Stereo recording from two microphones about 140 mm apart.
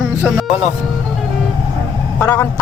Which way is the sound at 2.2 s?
20° left (ahead or behind).